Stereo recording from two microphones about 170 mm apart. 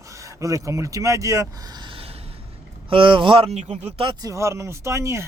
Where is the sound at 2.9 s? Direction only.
30° right (ahead or behind).